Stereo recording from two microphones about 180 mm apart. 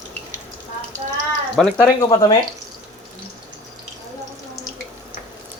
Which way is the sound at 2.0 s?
25° left (ahead or behind).